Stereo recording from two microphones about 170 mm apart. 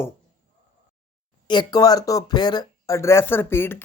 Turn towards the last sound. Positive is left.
turn(degrees=15)  # may be behind; listen again after turning